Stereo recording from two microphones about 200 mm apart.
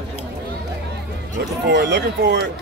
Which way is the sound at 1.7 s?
60° right (ahead or behind).